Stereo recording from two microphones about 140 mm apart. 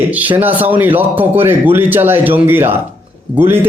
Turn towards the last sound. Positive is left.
turn(degrees=-15)  # may be behind; listen again after turning